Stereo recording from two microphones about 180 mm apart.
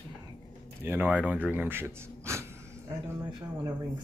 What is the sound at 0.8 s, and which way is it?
Speech, 10° right (ahead or behind).